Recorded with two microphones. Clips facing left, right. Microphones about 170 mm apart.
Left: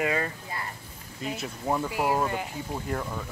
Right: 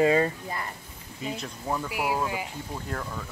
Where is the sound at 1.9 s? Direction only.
10° right (ahead or behind).